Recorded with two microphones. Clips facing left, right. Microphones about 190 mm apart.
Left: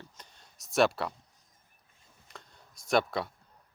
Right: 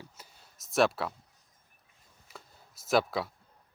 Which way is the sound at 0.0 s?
5° right (ahead or behind).